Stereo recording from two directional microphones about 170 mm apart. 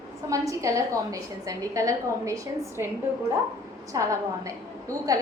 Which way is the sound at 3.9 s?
20° right (ahead or behind).